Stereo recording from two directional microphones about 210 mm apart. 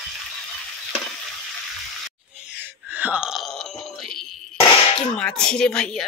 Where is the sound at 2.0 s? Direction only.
5° right (ahead or behind).